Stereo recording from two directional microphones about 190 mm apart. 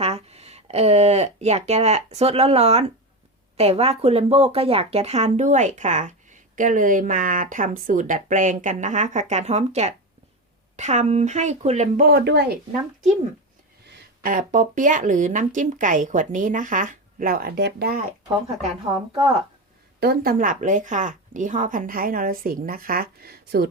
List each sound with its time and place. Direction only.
0.0 s speech: 35° right (ahead or behind); by 12.5 s 60° right (ahead or behind)
13.8 s speech: 50° right (ahead or behind)
18.9 s a woman's voice: 20° right (ahead or behind)
20.0 s speech: 55° right (ahead or behind)